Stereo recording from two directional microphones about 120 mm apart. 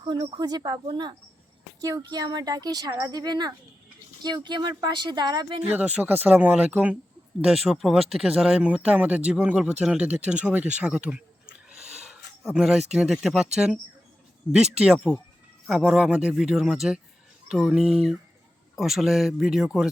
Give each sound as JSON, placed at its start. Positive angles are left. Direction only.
{"t": 0.0, "sound": "speech", "side_deg": -45}
{"t": 6.0, "sound": "speech", "side_deg": -15}
{"t": 7.4, "sound": "speech", "side_deg": 0}
{"t": 11.8, "sound": "a sound", "side_deg": -65}
{"t": 12.4, "sound": "speech", "side_deg": -5}
{"t": 14.5, "sound": "speech", "side_deg": -5}